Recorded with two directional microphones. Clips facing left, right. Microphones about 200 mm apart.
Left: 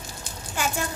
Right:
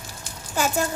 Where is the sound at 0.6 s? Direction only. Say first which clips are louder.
Right 4 dB; 40° right (ahead or behind).